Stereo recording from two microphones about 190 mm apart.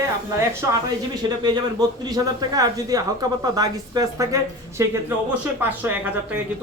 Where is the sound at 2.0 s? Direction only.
20° right (ahead or behind).